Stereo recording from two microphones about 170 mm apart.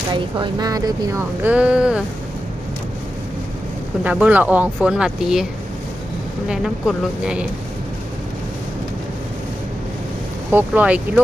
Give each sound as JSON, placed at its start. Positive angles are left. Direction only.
{"t": 0.1, "sound": "speech", "side_deg": -25}
{"t": 4.0, "sound": "speech", "side_deg": -10}
{"t": 6.5, "sound": "speech", "side_deg": -5}
{"t": 10.5, "sound": "speech", "side_deg": -10}